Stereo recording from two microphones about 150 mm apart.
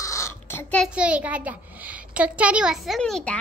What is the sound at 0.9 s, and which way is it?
A child's voice, 10° right (ahead or behind).